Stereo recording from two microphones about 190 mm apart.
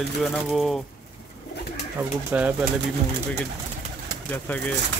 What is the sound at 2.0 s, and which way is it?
Speech, 10° right (ahead or behind).